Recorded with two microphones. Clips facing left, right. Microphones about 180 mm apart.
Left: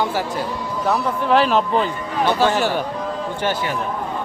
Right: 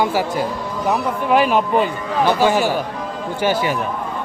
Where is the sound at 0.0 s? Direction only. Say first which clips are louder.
Right 3 dB; 10° right (ahead or behind).